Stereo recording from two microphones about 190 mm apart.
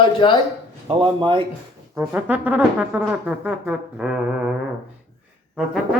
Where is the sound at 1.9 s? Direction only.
5° right (ahead or behind).